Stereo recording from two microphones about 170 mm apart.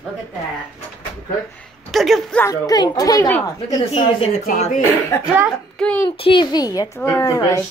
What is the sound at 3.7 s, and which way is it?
Speech, 30° left (ahead or behind).